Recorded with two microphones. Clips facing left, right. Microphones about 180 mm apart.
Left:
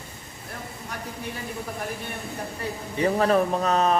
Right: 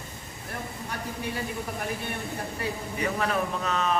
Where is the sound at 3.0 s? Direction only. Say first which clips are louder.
Left 7 dB; 35° left (ahead or behind).